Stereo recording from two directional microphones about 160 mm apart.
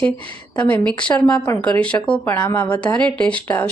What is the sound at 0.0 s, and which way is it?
Speech, 5° left (ahead or behind).